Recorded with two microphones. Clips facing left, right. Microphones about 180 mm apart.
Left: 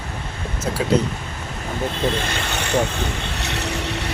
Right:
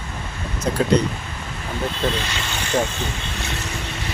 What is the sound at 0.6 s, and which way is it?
Speech, 5° left (ahead or behind).